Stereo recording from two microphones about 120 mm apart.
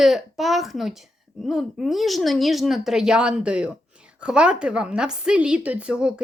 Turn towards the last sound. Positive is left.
turn(degrees=-10)  # may be behind; listen again after turning